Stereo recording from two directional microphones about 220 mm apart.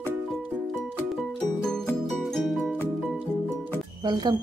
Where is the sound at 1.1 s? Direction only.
Centre (ahead or behind).